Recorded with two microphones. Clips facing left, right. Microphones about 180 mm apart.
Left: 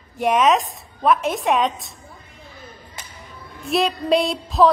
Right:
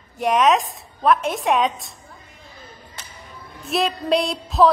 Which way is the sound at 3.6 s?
Centre (ahead or behind).